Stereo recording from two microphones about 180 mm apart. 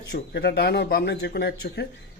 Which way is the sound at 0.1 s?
65° left (ahead or behind).